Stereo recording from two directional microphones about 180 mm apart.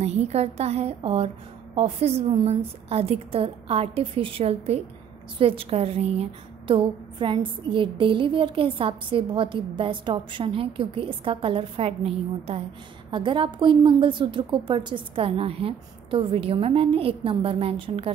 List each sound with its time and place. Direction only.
0.0 s a woman's voice: 35° right (ahead or behind)